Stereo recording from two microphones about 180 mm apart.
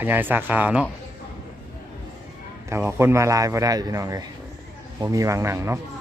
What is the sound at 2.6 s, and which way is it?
A man's voice, 15° right (ahead or behind).